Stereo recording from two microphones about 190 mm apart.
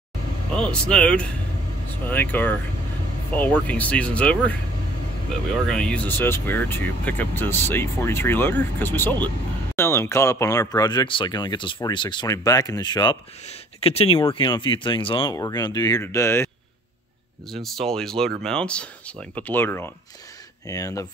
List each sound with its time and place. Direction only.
0.6 s speech: 5° left (ahead or behind)
5.7 s speech: 5° left (ahead or behind)
17.5 s speech: centre (ahead or behind); by 21.1 s 15° left (ahead or behind)